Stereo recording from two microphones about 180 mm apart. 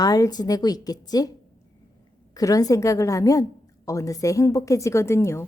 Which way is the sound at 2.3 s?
20° left (ahead or behind).